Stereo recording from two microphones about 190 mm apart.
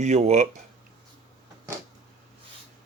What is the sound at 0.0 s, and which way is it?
Speech, 35° right (ahead or behind).